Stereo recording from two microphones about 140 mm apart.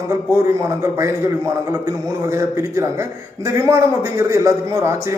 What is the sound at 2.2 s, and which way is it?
A man's voice, 20° right (ahead or behind).